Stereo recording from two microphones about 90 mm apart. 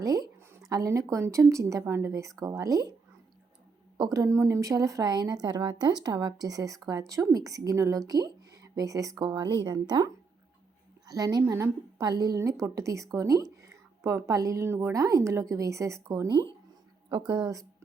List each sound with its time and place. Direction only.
0.0 s a woman's voice: 45° right (ahead or behind)
3.9 s a woman's voice: 45° right (ahead or behind)
11.1 s speech: 45° right (ahead or behind)
12.4 s a woman's voice: 35° right (ahead or behind)